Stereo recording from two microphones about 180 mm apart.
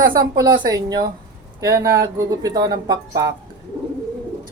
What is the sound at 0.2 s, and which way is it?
A woman's voice, 20° right (ahead or behind).